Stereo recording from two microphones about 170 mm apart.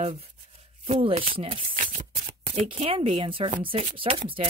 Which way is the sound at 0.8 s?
40° right (ahead or behind).